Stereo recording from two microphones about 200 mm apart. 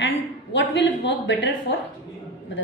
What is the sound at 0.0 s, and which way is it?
A woman's voice, 70° left (ahead or behind).